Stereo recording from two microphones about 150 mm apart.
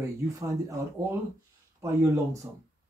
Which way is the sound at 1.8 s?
20° right (ahead or behind).